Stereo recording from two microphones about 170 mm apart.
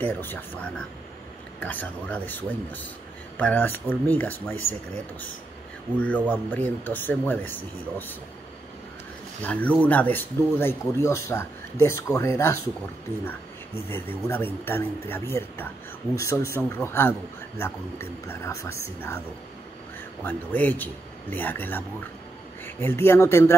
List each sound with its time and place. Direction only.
0.0 s speech: 10° left (ahead or behind)
5.9 s speech: 10° left (ahead or behind)
9.4 s speech: 10° left (ahead or behind)
13.8 s speech: 15° left (ahead or behind)
20.2 s speech: 10° left (ahead or behind)